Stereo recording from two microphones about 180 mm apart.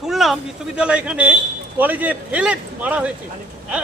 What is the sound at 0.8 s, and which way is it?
A man's voice, 5° right (ahead or behind).